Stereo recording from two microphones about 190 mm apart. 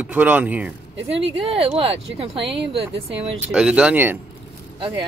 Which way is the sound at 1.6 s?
30° right (ahead or behind).